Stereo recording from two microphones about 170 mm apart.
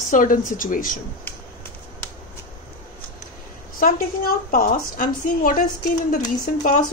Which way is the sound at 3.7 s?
60° left (ahead or behind).